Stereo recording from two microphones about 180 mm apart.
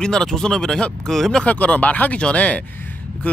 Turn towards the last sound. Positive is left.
turn(degrees=10)  # may be behind; listen again after turning